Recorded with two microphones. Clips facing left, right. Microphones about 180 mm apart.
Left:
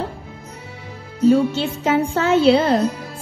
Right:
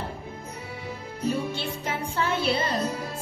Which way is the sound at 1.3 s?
90° left.